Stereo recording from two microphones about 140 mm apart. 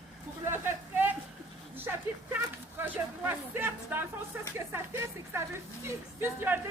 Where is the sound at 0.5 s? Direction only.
15° right (ahead or behind).